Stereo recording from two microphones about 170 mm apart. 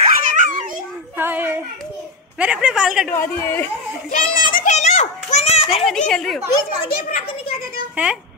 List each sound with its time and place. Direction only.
0.0 s a sound: 50° right (ahead or behind)
1.1 s child singing: 10° right (ahead or behind)
2.3 s speech: 5° right (ahead or behind)
3.1 s a woman's voice: 15° left (ahead or behind)
4.1 s children playing: 55° left (ahead or behind); by 5.9 s 35° left (ahead or behind)
6.0 s speech: centre (ahead or behind)
7.9 s speech: 5° right (ahead or behind)